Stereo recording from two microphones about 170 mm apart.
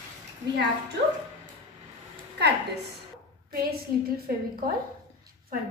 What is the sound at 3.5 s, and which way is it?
A woman's voice, 60° right (ahead or behind).